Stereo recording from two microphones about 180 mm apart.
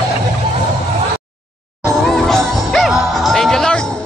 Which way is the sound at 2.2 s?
5° left (ahead or behind).